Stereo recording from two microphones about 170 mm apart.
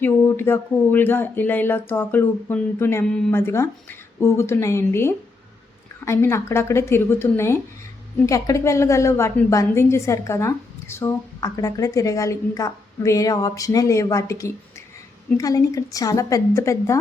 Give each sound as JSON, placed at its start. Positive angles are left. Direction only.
{"t": 0.0, "sound": "a woman's voice", "side_deg": 15}